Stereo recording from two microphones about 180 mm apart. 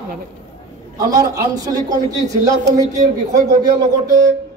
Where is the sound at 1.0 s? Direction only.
20° right (ahead or behind).